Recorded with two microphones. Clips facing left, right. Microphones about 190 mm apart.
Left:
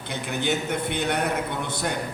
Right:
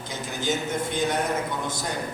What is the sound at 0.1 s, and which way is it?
A man's voice, 65° left (ahead or behind).